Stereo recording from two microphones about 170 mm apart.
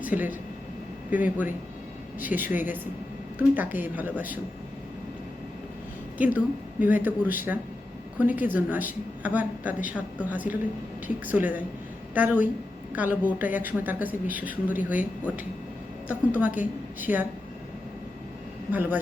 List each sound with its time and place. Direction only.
0.0 s a woman's voice: 10° right (ahead or behind)
6.1 s a woman's voice: 10° right (ahead or behind)
16.3 s a woman's voice: 10° right (ahead or behind)
18.7 s a woman's voice: 10° right (ahead or behind)